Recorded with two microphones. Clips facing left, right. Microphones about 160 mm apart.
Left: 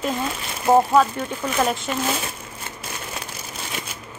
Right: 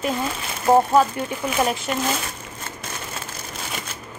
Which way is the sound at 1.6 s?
Centre (ahead or behind).